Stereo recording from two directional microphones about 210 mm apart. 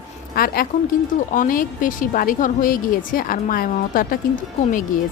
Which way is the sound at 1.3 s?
40° left (ahead or behind).